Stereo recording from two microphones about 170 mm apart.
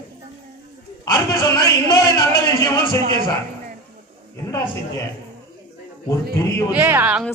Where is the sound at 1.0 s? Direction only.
20° left (ahead or behind).